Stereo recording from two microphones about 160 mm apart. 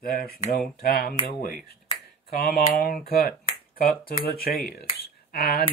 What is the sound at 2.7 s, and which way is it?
Speech, 70° left (ahead or behind).